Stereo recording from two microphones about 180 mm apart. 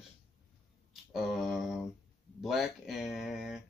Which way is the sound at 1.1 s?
Centre (ahead or behind).